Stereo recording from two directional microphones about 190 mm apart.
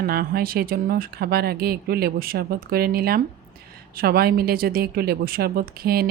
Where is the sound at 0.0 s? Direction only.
55° right (ahead or behind).